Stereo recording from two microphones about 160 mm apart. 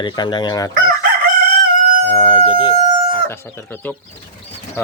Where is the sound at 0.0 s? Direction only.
30° left (ahead or behind).